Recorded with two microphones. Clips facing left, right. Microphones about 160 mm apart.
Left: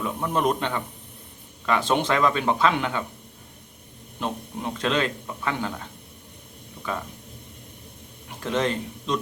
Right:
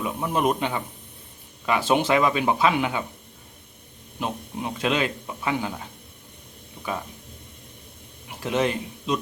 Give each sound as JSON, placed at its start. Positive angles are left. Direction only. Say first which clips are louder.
{"t": 0.0, "sound": "speech", "louder": "even", "side_deg": -10}
{"t": 4.2, "sound": "speech", "louder": "even", "side_deg": -10}
{"t": 8.3, "sound": "speech", "louder": "right 1 dB", "side_deg": -10}